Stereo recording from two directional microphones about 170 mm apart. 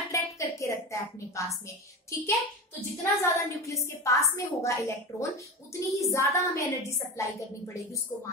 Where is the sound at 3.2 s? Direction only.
15° left (ahead or behind).